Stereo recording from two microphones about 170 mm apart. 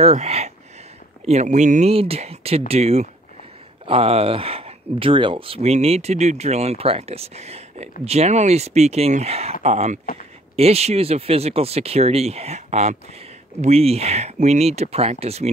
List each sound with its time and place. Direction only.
0.0 s speech: 40° right (ahead or behind)